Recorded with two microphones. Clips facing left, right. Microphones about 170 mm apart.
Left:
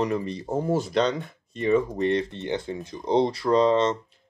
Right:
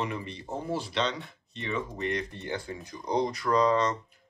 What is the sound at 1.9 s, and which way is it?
Speech, 30° left (ahead or behind).